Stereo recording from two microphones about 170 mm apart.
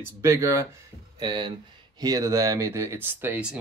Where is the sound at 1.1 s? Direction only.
25° right (ahead or behind).